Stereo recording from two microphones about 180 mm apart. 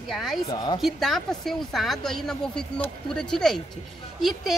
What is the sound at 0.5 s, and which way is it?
Speech, 20° left (ahead or behind).